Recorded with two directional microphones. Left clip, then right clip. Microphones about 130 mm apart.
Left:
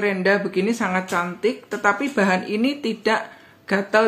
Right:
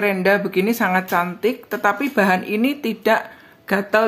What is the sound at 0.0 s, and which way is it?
Speech, 35° right (ahead or behind).